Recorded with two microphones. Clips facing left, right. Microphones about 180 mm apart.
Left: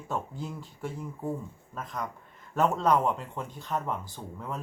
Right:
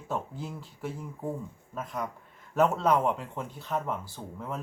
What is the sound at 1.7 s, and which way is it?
Speech, 5° right (ahead or behind).